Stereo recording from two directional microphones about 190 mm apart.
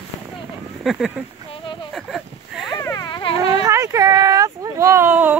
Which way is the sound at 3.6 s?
15° right (ahead or behind).